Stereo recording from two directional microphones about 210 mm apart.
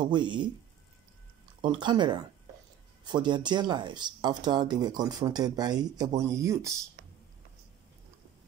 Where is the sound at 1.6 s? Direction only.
20° right (ahead or behind).